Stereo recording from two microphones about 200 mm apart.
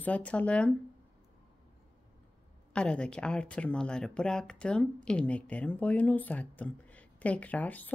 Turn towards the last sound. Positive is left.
turn(degrees=10)  # may be behind; listen again after turning